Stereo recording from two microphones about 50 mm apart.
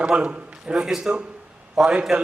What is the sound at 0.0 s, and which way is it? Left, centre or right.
A man's voice, right.